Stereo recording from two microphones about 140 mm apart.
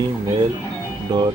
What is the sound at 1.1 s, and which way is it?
Speech, 30° right (ahead or behind).